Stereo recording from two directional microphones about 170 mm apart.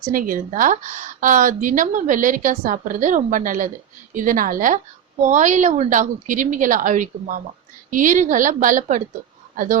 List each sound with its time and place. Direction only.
0.0 s speech: 55° right (ahead or behind)